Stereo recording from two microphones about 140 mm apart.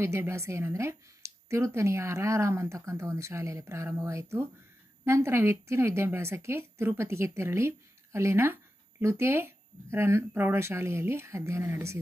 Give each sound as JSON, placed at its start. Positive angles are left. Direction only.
{"t": 0.0, "sound": "speech", "side_deg": -20}